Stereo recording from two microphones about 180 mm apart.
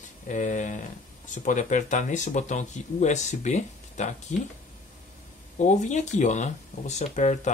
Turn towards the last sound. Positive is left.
turn(degrees=40)  # may be behind; listen again after turning